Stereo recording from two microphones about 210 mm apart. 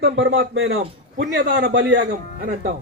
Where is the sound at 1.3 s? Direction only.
50° right (ahead or behind).